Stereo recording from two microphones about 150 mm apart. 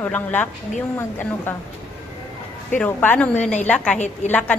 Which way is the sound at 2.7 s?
10° left (ahead or behind).